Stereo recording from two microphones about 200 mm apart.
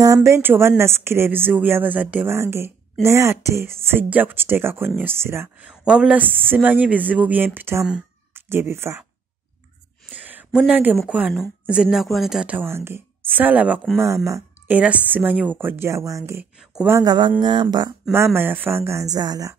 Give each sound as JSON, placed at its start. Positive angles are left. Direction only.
{"t": 0.0, "sound": "a woman's voice", "side_deg": -15}
{"t": 10.1, "sound": "a woman's voice", "side_deg": -10}
{"t": 17.4, "sound": "a sound", "side_deg": -20}
{"t": 18.1, "sound": "a woman's voice", "side_deg": -10}